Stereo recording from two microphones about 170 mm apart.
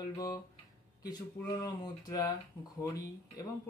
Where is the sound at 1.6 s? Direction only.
20° left (ahead or behind).